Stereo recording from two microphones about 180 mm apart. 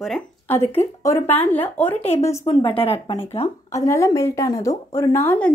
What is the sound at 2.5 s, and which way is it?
Speech, 30° left (ahead or behind).